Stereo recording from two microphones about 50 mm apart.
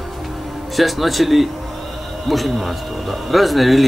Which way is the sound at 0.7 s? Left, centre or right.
Centre.